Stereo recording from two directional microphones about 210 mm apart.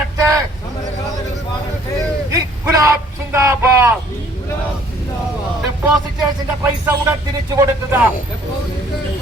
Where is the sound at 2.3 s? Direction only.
15° right (ahead or behind).